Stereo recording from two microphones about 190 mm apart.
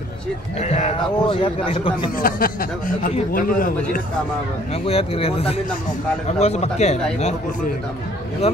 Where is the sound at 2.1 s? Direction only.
50° left (ahead or behind).